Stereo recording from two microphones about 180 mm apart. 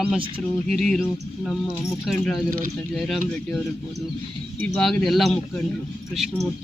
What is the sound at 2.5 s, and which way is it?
Speech, 50° right (ahead or behind).